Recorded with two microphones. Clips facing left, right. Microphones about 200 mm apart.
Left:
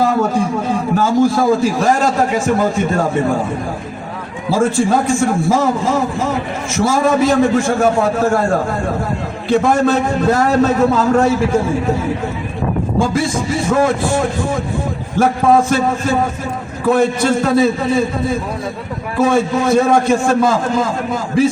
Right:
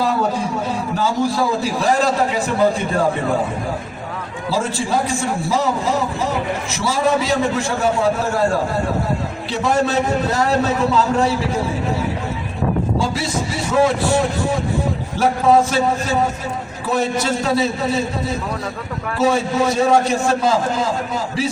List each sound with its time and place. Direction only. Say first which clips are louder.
0.0 s a sound: left 4 dB; 50° left (ahead or behind)
0.9 s a man's voice: left 6 dB; 50° left (ahead or behind)
4.5 s a man's voice: left 6 dB; 50° left (ahead or behind)
9.5 s a man's voice: left 6 dB; 50° left (ahead or behind)
13.0 s a man's voice: left 5 dB; 50° left (ahead or behind)